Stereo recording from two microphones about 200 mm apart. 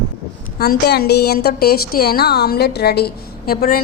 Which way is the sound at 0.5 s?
50° left (ahead or behind).